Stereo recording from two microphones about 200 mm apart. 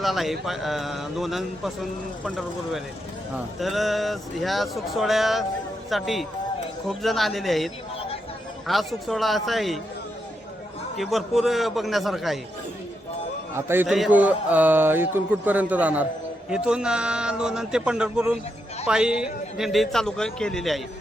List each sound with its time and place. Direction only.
0.0 s speech: centre (ahead or behind)
7.9 s a sound: 30° left (ahead or behind)
8.6 s speech: centre (ahead or behind)
10.9 s speech: centre (ahead or behind)
13.6 s a man's voice: 10° right (ahead or behind)
13.8 s a man's voice: centre (ahead or behind)